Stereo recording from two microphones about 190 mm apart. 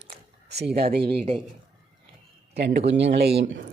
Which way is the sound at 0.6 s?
55° right (ahead or behind).